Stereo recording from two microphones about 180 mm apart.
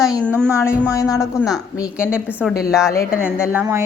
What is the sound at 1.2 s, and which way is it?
A woman's voice, centre (ahead or behind).